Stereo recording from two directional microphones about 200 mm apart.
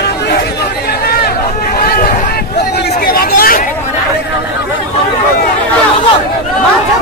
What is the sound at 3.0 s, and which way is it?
Hubbub, 50° left (ahead or behind).